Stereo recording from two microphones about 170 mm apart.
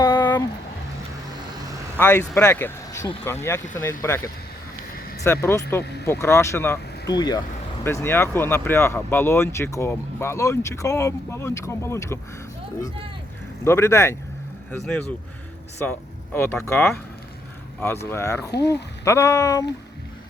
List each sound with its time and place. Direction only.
0.0 s a sound: 15° left (ahead or behind)
2.0 s speech: 10° left (ahead or behind)
5.2 s speech: 15° left (ahead or behind)
7.9 s speech: 15° left (ahead or behind)
13.7 s speech: 15° left (ahead or behind)
14.7 s speech: 5° left (ahead or behind)